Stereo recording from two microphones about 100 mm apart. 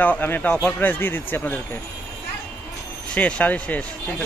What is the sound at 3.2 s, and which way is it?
Speech, 15° left (ahead or behind).